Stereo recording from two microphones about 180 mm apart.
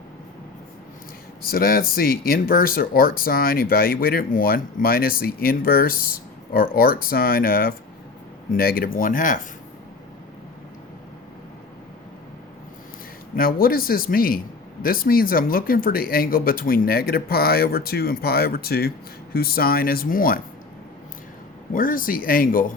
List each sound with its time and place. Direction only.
1.4 s speech: 55° left (ahead or behind)
13.3 s speech: 55° left (ahead or behind)
21.7 s speech: 50° left (ahead or behind)